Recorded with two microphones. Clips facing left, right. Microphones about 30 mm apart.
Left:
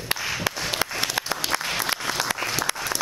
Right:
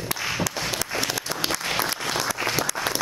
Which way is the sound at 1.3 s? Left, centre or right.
Centre.